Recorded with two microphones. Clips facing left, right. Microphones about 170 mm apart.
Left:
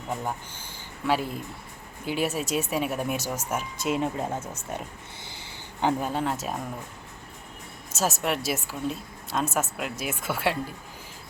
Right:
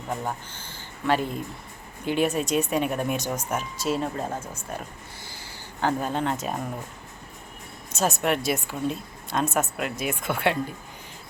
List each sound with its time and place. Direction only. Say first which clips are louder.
0.1 s a woman's voice: right 1 dB; 5° left (ahead or behind)
5.2 s a sound: right 1 dB; 20° left (ahead or behind)
6.0 s a woman's voice: right 1 dB; 5° left (ahead or behind)
7.9 s a woman's voice: right 3 dB; centre (ahead or behind)